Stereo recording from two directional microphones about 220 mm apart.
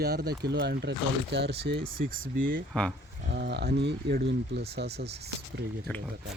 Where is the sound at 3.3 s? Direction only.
50° right (ahead or behind).